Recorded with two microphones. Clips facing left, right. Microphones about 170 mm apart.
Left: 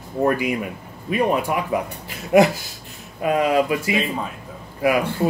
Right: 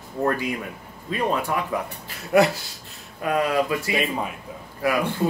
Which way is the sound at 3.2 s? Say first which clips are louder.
Left 4 dB; 15° left (ahead or behind).